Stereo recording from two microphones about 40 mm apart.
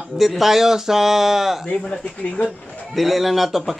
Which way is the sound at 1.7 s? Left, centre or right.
Left.